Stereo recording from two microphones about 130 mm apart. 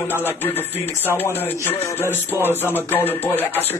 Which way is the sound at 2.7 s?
15° left (ahead or behind).